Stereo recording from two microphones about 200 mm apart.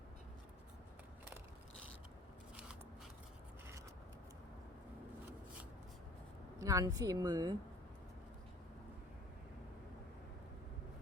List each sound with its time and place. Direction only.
6.6 s speech: 15° right (ahead or behind)